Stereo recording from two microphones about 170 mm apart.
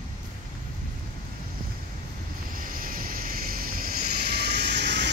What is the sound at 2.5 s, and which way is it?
Vehicle, 55° right (ahead or behind).